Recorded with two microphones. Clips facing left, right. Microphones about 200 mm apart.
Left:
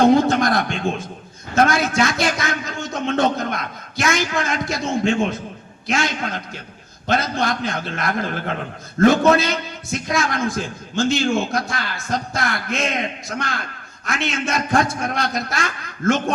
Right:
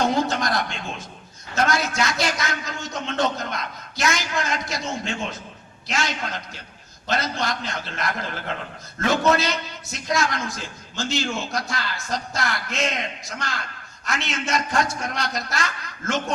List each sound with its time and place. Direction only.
0.0 s a man's voice: 55° left (ahead or behind)